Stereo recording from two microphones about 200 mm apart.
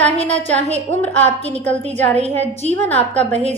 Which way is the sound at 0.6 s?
35° right (ahead or behind).